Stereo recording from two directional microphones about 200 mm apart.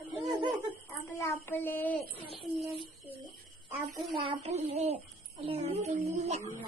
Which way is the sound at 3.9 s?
Centre (ahead or behind).